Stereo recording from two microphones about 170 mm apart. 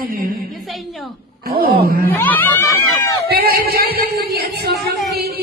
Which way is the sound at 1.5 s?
65° right (ahead or behind).